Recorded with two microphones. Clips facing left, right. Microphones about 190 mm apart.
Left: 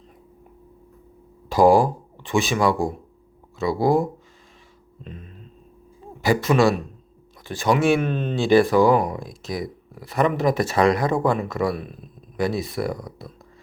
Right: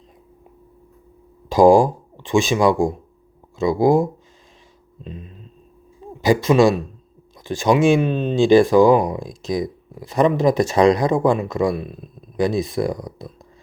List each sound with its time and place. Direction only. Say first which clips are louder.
1.5 s speech: right 4 dB; 15° right (ahead or behind)
6.2 s speech: right 4 dB; 15° right (ahead or behind)